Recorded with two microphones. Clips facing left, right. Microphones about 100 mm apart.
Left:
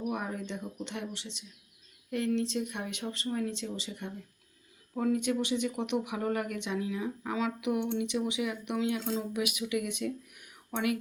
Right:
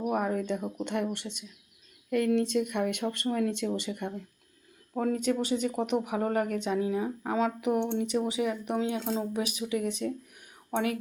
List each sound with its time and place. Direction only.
0.0 s speech: 55° right (ahead or behind); by 10.9 s 35° right (ahead or behind)